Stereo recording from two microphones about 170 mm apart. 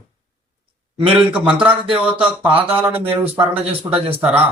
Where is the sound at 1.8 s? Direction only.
30° right (ahead or behind).